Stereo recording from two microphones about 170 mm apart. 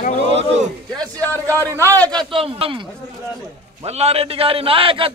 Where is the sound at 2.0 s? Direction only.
30° right (ahead or behind).